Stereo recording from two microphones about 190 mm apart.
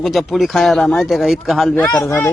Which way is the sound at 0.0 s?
Centre (ahead or behind).